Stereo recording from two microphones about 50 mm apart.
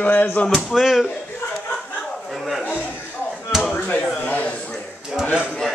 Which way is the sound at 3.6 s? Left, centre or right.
Left.